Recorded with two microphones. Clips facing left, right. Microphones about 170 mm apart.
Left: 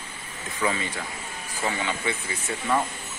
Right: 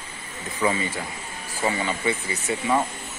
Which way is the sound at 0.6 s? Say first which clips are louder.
Right 3 dB; 10° right (ahead or behind).